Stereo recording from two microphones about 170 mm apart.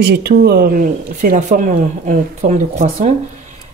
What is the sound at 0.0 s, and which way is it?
Speech, 75° right (ahead or behind).